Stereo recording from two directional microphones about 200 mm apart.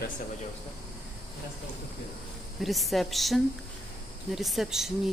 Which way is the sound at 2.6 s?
Centre (ahead or behind).